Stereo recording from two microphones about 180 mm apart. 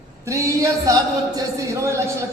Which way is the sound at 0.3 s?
15° right (ahead or behind).